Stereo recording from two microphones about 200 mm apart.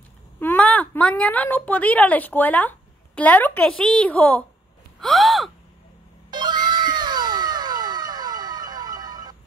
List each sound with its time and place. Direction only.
0.4 s a woman's voice: 10° left (ahead or behind)
5.0 s gasp: centre (ahead or behind)
6.3 s cat: 20° right (ahead or behind)